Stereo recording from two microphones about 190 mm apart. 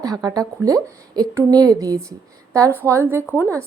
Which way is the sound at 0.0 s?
20° right (ahead or behind).